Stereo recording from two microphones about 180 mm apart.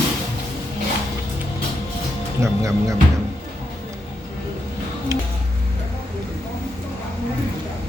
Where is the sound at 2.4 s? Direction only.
15° right (ahead or behind).